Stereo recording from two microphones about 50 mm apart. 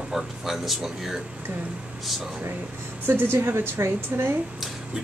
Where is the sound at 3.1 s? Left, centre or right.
Right.